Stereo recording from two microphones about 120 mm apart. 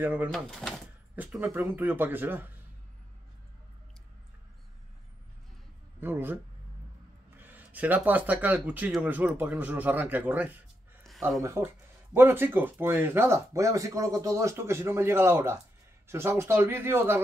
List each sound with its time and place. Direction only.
0.0 s speech: 15° right (ahead or behind)
0.3 s speech: centre (ahead or behind)
1.4 s speech: 15° right (ahead or behind)
5.9 s speech: 20° right (ahead or behind)